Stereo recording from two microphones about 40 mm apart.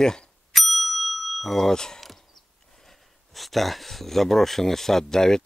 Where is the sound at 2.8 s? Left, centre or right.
Centre.